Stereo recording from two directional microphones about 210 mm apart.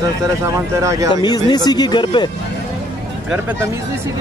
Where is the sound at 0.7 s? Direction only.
15° right (ahead or behind).